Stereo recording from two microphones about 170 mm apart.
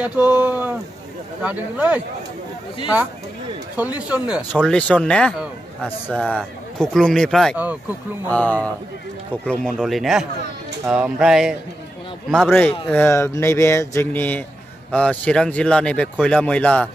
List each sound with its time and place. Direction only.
0.0 s speech: 10° right (ahead or behind)
3.7 s speech: 10° right (ahead or behind)
4.6 s a man's voice: 5° left (ahead or behind)
9.8 s a man's voice: centre (ahead or behind)
12.4 s speech: 10° left (ahead or behind)